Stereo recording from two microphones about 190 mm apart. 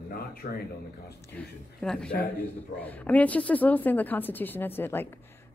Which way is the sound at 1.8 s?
5° left (ahead or behind).